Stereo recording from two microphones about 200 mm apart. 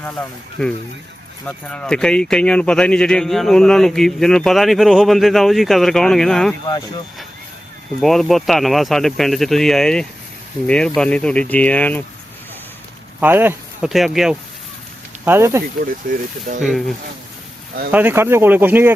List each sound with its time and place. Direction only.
0.6 s speech: 5° left (ahead or behind)
8.0 s speech: centre (ahead or behind)
13.1 s speech: 10° right (ahead or behind)
16.0 s speech: 45° right (ahead or behind)
16.6 s speech: centre (ahead or behind)
17.9 s speech: 10° right (ahead or behind)